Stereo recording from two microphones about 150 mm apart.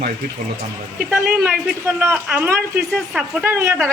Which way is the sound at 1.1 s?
10° right (ahead or behind).